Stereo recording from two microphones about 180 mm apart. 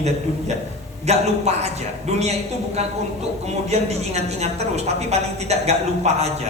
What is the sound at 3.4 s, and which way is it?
A woman's voice, 35° right (ahead or behind).